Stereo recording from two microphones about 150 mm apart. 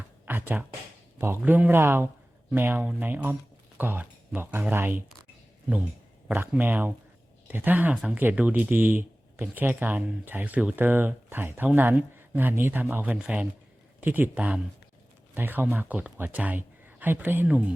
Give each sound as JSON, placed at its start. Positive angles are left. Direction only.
{"t": 0.3, "sound": "speech", "side_deg": -15}
{"t": 6.2, "sound": "speech", "side_deg": -10}